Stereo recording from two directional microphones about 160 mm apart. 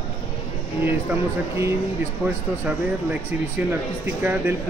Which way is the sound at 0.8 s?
10° right (ahead or behind).